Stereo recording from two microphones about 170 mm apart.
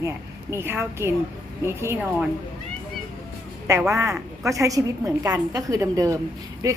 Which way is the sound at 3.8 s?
15° right (ahead or behind).